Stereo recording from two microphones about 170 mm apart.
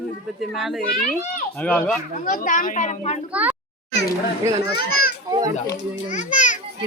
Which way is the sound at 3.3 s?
5° right (ahead or behind).